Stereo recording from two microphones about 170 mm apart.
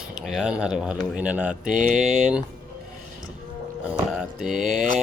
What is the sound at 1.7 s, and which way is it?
Speech, 50° right (ahead or behind).